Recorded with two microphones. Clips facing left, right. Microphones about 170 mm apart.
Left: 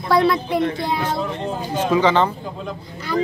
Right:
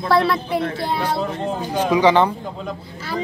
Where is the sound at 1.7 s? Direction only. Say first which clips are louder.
Right 2 dB; 10° right (ahead or behind).